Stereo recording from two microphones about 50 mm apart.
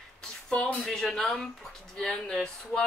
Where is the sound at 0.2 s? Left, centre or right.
Centre.